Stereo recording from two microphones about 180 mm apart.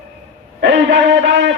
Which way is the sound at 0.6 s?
80° right.